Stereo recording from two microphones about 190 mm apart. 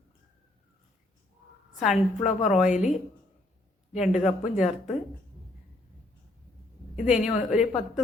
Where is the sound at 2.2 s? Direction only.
40° left (ahead or behind).